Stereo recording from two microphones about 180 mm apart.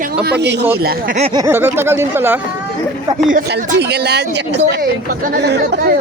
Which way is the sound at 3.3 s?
65° right (ahead or behind).